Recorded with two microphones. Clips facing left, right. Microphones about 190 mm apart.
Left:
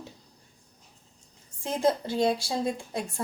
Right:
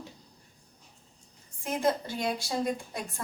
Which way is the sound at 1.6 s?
30° left (ahead or behind).